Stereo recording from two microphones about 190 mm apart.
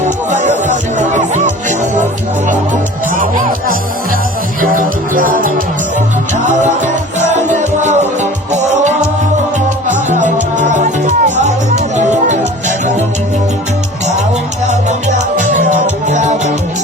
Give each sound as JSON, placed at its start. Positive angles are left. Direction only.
{"t": 0.0, "sound": "music", "side_deg": -40}
{"t": 4.6, "sound": "music", "side_deg": -45}
{"t": 6.8, "sound": "music", "side_deg": -40}
{"t": 9.9, "sound": "music", "side_deg": -40}
{"t": 15.4, "sound": "music", "side_deg": -40}